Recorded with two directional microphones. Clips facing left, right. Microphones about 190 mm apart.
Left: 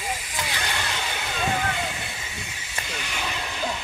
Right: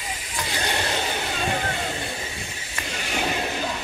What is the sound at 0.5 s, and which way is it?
Vehicle, 30° right (ahead or behind).